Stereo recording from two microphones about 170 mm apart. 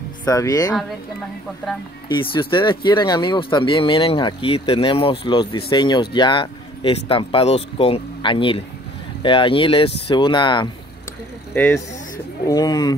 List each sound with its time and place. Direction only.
0.2 s speech: 20° left (ahead or behind)
2.0 s speech: 30° left (ahead or behind)
11.5 s speech: 10° left (ahead or behind)
12.4 s speech: 20° left (ahead or behind)